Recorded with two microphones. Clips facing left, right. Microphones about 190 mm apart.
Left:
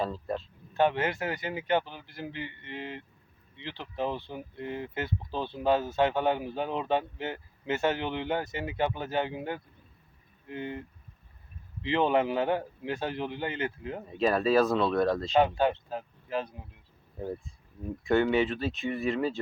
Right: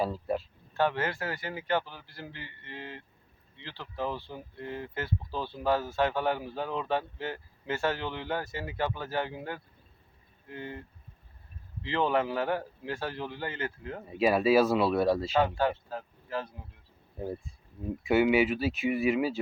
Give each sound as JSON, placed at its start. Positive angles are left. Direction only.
{"t": 0.0, "sound": "speech", "side_deg": -10}
{"t": 0.7, "sound": "speech", "side_deg": 20}
{"t": 14.2, "sound": "speech", "side_deg": -10}
{"t": 15.4, "sound": "speech", "side_deg": 20}
{"t": 18.0, "sound": "speech", "side_deg": -5}